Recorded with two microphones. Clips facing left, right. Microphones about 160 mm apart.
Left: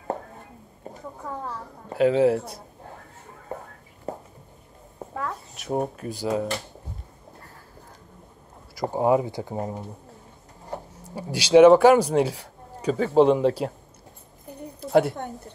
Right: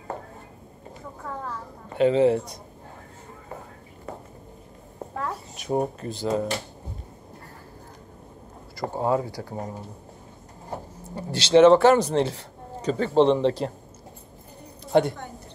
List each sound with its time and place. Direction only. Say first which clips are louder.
1.2 s speech: left 1 dB; 15° left (ahead or behind)
2.0 s a man's voice: even; 5° left (ahead or behind)
4.9 s a sound: even; centre (ahead or behind)
8.7 s speech: left 3 dB; 15° left (ahead or behind)
11.1 s speech: left 2 dB; 10° left (ahead or behind)
14.8 s a sound: left 1 dB; 5° left (ahead or behind)